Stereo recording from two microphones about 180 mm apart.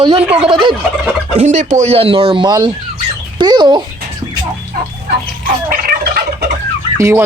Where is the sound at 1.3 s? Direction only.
40° right (ahead or behind); by 3.8 s 25° right (ahead or behind).